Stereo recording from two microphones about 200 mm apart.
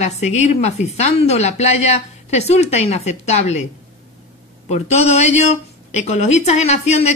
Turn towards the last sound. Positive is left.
turn(degrees=35)  # may be behind; listen again after turning